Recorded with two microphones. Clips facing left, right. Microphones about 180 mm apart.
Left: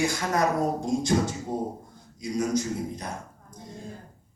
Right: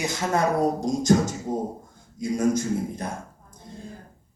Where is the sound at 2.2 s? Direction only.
50° right (ahead or behind).